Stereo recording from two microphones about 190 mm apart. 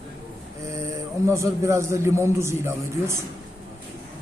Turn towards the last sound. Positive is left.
turn(degrees=-15)  # may be behind; listen again after turning